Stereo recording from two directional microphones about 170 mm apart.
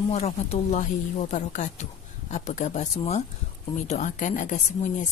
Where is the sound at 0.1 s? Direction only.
40° left (ahead or behind).